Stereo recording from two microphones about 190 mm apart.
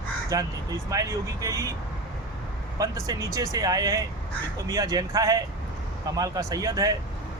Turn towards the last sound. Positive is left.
turn(degrees=-20)  # may be behind; listen again after turning